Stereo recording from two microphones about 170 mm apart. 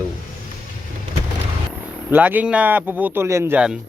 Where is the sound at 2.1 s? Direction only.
10° right (ahead or behind).